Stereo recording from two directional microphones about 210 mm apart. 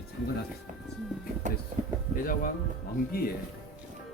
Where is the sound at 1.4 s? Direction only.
35° right (ahead or behind).